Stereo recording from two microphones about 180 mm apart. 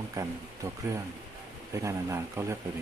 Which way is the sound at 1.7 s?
15° right (ahead or behind).